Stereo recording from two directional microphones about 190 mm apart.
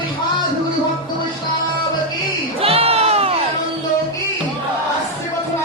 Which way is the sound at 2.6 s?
30° right (ahead or behind).